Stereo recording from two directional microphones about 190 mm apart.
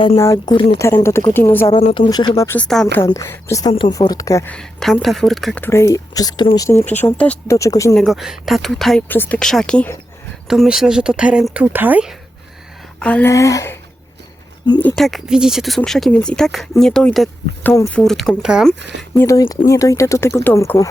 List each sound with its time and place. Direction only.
0.2 s speech: 15° left (ahead or behind)
1.7 s speech: 30° left (ahead or behind)
2.6 s speech: 5° left (ahead or behind)
2.8 s speech: 15° left (ahead or behind)
3.7 s speech: 25° left (ahead or behind)
4.5 s speech: 5° left (ahead or behind)
7.9 s speech: centre (ahead or behind)
13.0 s speech: 5° left (ahead or behind)
14.8 s speech: 5° left (ahead or behind)
18.8 s speech: 70° right (ahead or behind)
19.1 s speech: 15° left (ahead or behind)